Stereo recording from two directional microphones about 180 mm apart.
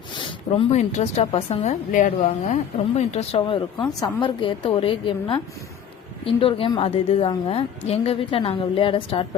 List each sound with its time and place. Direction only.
0.7 s a woman's voice: 40° left (ahead or behind)
1.9 s a woman's voice: 45° left (ahead or behind)